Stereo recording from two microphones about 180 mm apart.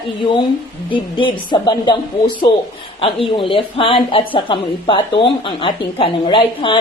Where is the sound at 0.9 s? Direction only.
30° left (ahead or behind).